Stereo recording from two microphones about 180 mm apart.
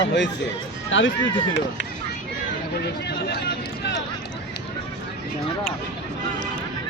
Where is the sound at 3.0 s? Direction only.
65° left (ahead or behind).